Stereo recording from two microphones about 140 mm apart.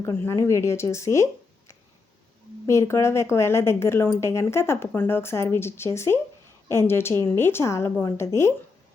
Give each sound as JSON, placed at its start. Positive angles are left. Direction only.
{"t": 0.0, "sound": "speech", "side_deg": 20}